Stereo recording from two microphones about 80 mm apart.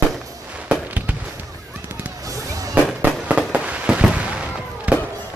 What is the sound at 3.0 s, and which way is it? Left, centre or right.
Fireworks, centre.